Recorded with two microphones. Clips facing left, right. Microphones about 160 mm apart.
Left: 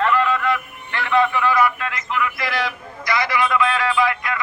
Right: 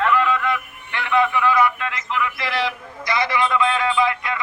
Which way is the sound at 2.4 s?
30° right (ahead or behind).